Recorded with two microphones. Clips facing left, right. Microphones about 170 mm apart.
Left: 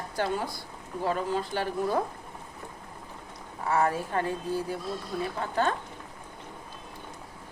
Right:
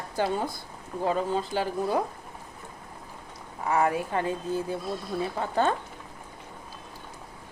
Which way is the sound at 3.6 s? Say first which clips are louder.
Right 1 dB; 15° right (ahead or behind).